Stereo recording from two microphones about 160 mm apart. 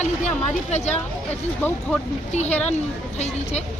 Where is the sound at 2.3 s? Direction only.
45° left (ahead or behind).